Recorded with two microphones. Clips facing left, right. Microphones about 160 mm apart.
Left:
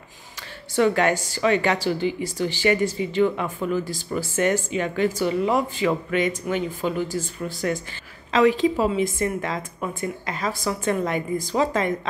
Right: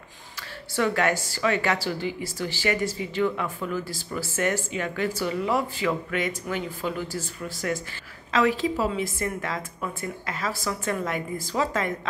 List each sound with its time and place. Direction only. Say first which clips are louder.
0.7 s a woman's voice: left 4 dB; 25° left (ahead or behind)